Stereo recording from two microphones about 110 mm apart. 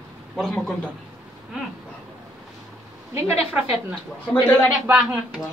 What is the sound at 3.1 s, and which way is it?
Speech, 15° right (ahead or behind).